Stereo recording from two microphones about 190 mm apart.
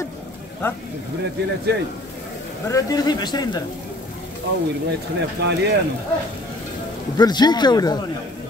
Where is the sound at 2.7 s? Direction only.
20° left (ahead or behind).